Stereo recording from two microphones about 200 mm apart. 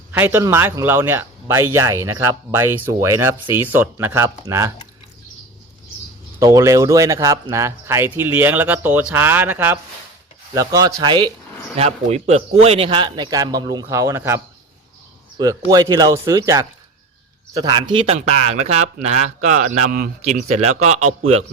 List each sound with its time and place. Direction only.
0.1 s speech: 10° right (ahead or behind)
6.4 s a man's voice: 15° right (ahead or behind); by 21.4 s 35° right (ahead or behind)